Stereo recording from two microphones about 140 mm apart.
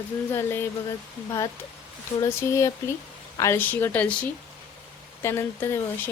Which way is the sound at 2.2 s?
20° left (ahead or behind).